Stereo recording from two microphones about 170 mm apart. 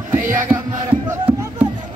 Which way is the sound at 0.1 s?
10° right (ahead or behind).